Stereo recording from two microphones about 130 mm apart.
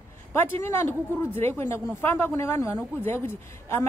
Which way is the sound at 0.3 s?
15° left (ahead or behind).